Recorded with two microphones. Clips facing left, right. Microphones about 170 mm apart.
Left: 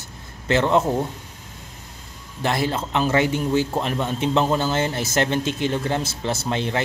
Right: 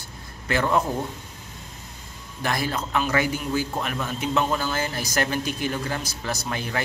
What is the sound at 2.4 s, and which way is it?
A man's voice, 25° left (ahead or behind).